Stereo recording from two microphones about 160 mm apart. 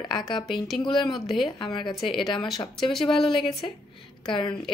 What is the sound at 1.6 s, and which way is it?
Speech, 30° left (ahead or behind).